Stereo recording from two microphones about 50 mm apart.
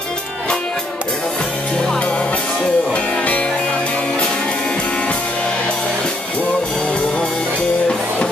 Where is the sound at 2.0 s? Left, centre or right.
Left.